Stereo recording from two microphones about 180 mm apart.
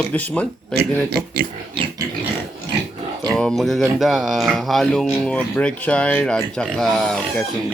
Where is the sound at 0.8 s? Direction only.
60° right (ahead or behind).